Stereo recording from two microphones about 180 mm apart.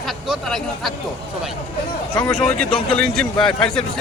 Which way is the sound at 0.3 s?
Centre (ahead or behind).